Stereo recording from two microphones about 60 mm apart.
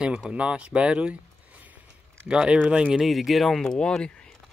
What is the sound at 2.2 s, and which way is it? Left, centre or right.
Speech, centre.